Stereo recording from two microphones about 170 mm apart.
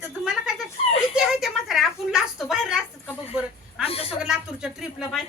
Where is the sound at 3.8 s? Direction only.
35° left (ahead or behind).